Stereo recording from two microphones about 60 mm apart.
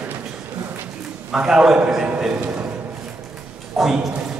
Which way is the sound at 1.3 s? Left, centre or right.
Centre.